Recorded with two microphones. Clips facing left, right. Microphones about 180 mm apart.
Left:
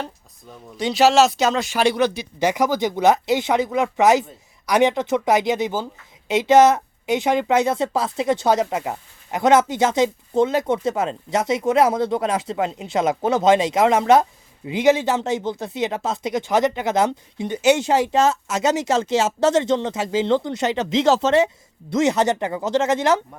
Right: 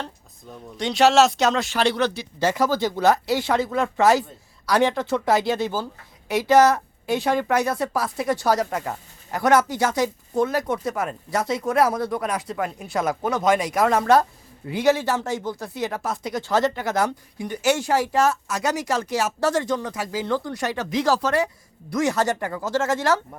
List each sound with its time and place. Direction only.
0.8 s speech: centre (ahead or behind)
1.7 s speech: 10° left (ahead or behind)